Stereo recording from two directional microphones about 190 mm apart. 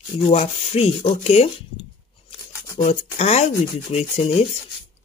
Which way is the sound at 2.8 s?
35° left (ahead or behind).